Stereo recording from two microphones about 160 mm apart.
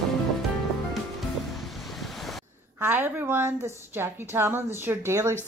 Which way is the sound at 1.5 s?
Centre (ahead or behind).